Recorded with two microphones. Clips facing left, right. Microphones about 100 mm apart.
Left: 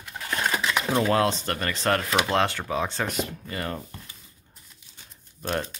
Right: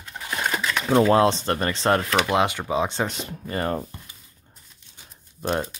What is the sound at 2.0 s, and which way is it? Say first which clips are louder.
Speech: right 2 dB; 10° left (ahead or behind).